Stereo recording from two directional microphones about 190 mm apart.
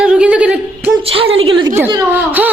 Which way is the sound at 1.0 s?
30° right (ahead or behind).